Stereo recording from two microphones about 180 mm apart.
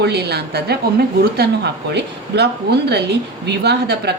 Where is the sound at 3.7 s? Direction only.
65° right (ahead or behind).